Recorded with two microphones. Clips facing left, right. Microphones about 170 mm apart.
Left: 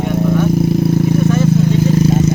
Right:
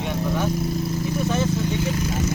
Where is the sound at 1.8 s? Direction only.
35° left (ahead or behind).